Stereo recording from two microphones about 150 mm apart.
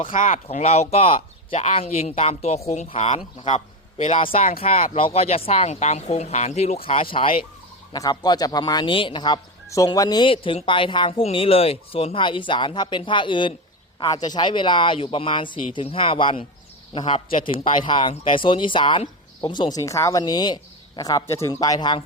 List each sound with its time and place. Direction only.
0.1 s speech: 60° left (ahead or behind)
0.4 s a man's voice: 45° left (ahead or behind)
4.4 s speech: 65° left (ahead or behind)
4.6 s speech: 45° left (ahead or behind)
7.9 s speech: 25° left (ahead or behind)